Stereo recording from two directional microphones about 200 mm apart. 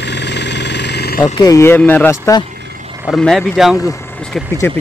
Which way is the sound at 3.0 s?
Centre (ahead or behind).